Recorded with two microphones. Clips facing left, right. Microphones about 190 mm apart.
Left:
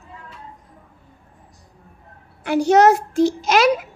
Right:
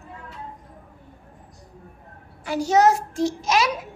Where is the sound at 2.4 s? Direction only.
65° left (ahead or behind).